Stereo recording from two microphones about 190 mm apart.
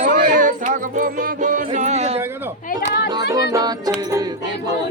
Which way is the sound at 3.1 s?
20° right (ahead or behind).